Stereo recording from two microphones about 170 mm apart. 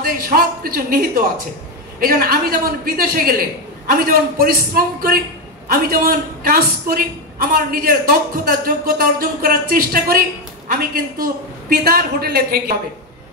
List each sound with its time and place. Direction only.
0.0 s a man's voice: 60° right (ahead or behind)
11.7 s a man's voice: 60° right (ahead or behind)